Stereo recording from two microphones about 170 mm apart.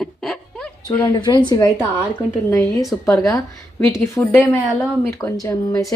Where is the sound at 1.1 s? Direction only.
25° left (ahead or behind).